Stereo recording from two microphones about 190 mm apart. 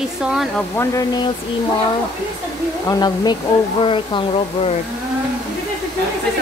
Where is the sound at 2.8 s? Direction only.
20° left (ahead or behind).